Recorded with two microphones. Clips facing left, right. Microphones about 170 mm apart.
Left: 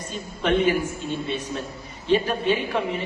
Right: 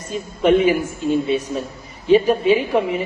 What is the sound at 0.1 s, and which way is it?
A man's voice, 10° right (ahead or behind).